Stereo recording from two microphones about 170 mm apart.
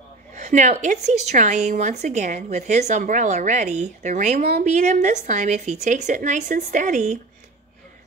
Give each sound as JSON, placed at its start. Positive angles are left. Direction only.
{"t": 0.3, "sound": "a woman's voice", "side_deg": -45}